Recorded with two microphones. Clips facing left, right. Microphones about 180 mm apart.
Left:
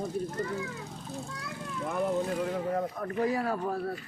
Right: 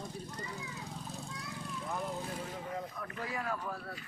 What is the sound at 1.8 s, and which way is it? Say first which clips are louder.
Speech: left 10 dB; 65° left (ahead or behind).